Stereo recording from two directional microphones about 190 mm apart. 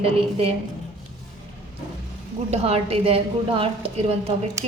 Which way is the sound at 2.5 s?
30° right (ahead or behind).